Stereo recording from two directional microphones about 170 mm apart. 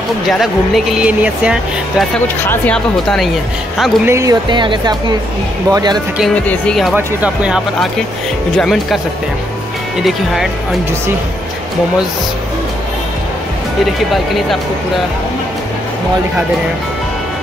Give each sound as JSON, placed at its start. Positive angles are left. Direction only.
{"t": 0.3, "sound": "speech", "side_deg": 0}
{"t": 2.4, "sound": "speech", "side_deg": 10}
{"t": 4.1, "sound": "speech", "side_deg": -20}
{"t": 6.1, "sound": "speech", "side_deg": 5}
{"t": 7.0, "sound": "speech", "side_deg": -10}
{"t": 10.0, "sound": "speech", "side_deg": 0}
{"t": 14.1, "sound": "speech", "side_deg": 0}